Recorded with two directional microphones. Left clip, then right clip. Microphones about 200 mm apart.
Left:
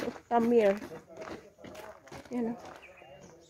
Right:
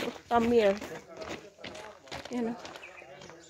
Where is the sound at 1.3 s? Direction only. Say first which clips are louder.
Right 4 dB; 20° right (ahead or behind).